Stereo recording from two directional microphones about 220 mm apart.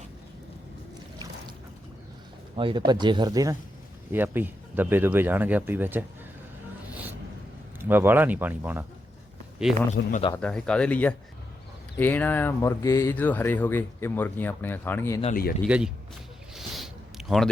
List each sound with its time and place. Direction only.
2.6 s speech: 20° right (ahead or behind)
7.8 s speech: 10° right (ahead or behind)
9.9 s speech: 35° left (ahead or behind)
10.2 s speech: 10° left (ahead or behind)
15.2 s speech: 40° left (ahead or behind)
15.6 s speech: 5° right (ahead or behind)
16.6 s a sound: centre (ahead or behind)